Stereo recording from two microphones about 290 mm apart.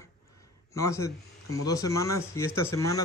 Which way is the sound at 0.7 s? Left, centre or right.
Centre.